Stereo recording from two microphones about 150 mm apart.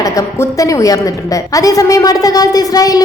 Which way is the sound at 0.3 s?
20° left (ahead or behind).